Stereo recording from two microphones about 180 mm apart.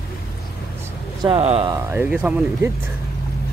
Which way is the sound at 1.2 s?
30° right (ahead or behind).